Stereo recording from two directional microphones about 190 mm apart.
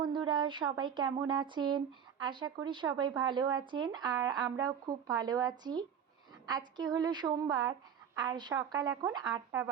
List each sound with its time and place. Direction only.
0.0 s a woman's voice: 25° right (ahead or behind)